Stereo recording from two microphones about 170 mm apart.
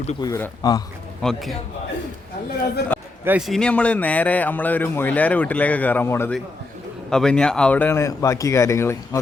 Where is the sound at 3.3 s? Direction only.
Centre (ahead or behind).